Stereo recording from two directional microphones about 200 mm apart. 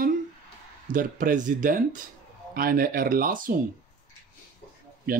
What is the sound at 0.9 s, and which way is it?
Speech, 40° right (ahead or behind).